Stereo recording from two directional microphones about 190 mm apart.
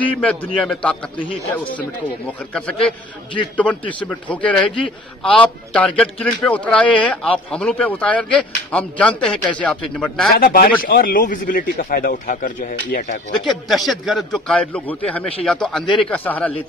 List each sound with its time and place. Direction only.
0.0 s a man's voice: 5° left (ahead or behind)
2.2 s a man's voice: 5° left (ahead or behind)
10.3 s speech: 50° left (ahead or behind)
13.7 s a man's voice: centre (ahead or behind)